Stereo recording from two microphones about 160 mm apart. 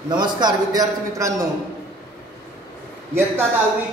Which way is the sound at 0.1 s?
30° right (ahead or behind).